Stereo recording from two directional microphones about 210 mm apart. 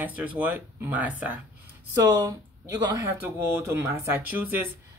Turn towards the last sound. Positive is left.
turn(degrees=-10)  # may be behind; listen again after turning